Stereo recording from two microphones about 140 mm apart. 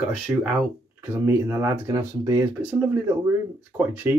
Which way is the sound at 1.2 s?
15° right (ahead or behind).